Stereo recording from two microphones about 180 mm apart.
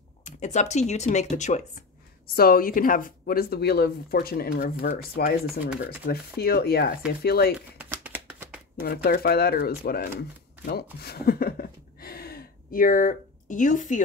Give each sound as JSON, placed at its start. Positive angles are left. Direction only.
{"t": 0.2, "sound": "speech", "side_deg": 40}
{"t": 2.2, "sound": "a woman's voice", "side_deg": 55}
{"t": 7.8, "sound": "shuffling cards", "side_deg": -10}
{"t": 8.8, "sound": "a woman's voice", "side_deg": 60}
{"t": 10.6, "sound": "a sound", "side_deg": 60}